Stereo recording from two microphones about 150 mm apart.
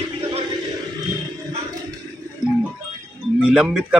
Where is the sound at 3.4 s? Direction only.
5° right (ahead or behind).